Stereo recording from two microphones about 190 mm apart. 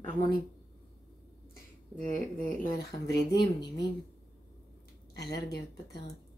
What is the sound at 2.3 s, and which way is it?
A woman's voice, 45° left (ahead or behind).